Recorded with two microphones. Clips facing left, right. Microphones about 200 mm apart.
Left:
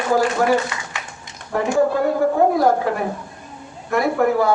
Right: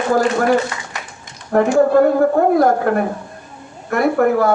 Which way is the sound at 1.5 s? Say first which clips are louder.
Right 5 dB; 55° right (ahead or behind).